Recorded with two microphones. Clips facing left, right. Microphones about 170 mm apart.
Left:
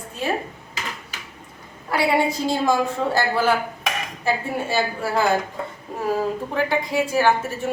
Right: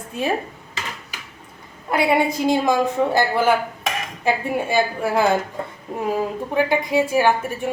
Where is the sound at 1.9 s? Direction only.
20° right (ahead or behind).